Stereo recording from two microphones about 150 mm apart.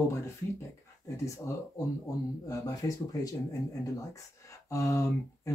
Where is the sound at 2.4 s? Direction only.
25° left (ahead or behind).